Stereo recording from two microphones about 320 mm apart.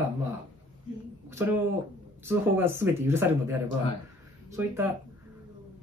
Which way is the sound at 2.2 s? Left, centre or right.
Centre.